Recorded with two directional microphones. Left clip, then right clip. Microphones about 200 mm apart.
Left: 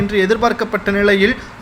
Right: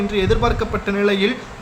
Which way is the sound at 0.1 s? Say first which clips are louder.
Left 5 dB; 25° left (ahead or behind).